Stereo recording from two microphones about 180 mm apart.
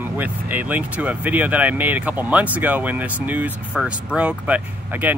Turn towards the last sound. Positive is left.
turn(degrees=-10)  # may be behind; listen again after turning